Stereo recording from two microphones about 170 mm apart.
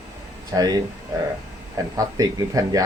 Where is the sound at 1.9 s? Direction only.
20° right (ahead or behind).